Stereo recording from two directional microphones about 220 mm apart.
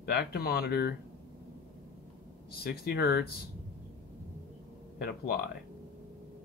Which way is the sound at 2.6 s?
45° left (ahead or behind).